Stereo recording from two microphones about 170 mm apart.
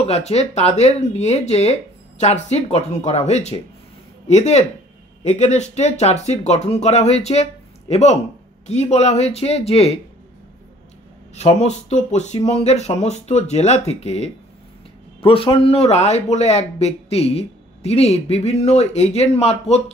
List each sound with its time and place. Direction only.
0.0 s a man's voice: 40° left (ahead or behind)
11.3 s a man's voice: 40° left (ahead or behind)